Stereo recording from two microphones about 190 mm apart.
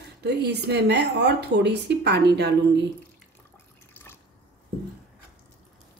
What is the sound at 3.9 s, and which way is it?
Drip, 10° left (ahead or behind).